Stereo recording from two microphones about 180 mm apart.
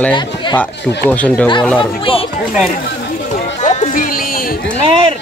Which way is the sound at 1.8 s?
30° left (ahead or behind).